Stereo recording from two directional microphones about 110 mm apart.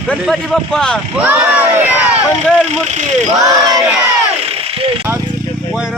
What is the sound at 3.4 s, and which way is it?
Battle cry, 35° right (ahead or behind).